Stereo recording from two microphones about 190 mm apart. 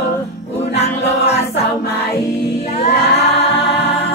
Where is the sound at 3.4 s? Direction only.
65° left (ahead or behind).